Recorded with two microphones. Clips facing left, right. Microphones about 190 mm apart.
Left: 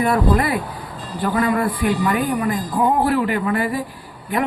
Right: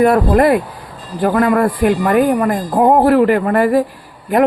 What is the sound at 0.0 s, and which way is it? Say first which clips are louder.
Speech: right 7 dB; 45° right (ahead or behind).